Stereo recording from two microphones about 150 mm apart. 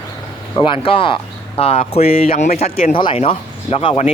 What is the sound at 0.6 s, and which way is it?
Speech, 35° left (ahead or behind).